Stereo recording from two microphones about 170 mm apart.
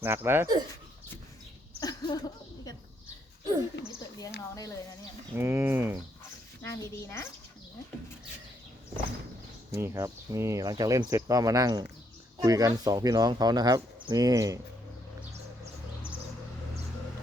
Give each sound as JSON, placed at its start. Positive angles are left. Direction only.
{"t": 0.0, "sound": "speech", "side_deg": -10}
{"t": 1.8, "sound": "a sound", "side_deg": 20}
{"t": 3.8, "sound": "a sound", "side_deg": 90}
{"t": 5.3, "sound": "speech", "side_deg": -15}
{"t": 6.6, "sound": "a woman's voice", "side_deg": 15}
{"t": 9.7, "sound": "speech", "side_deg": -15}